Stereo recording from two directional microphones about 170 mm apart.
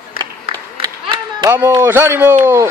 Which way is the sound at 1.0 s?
25° right (ahead or behind).